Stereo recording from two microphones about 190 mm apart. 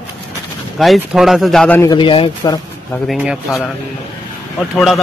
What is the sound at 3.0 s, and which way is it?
Speech, centre (ahead or behind).